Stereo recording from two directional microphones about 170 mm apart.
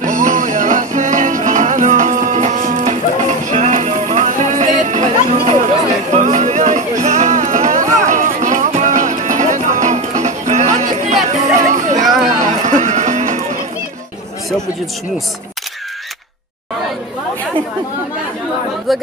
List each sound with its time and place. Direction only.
0.0 s music: 50° right (ahead or behind)
18.9 s speech: centre (ahead or behind)